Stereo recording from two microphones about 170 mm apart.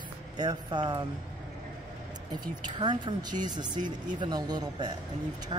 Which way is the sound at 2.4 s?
25° right (ahead or behind).